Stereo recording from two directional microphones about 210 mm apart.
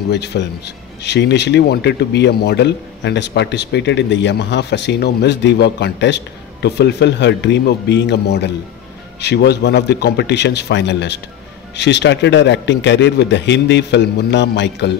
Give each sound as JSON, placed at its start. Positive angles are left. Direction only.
{"t": 0.1, "sound": "a man's voice", "side_deg": 55}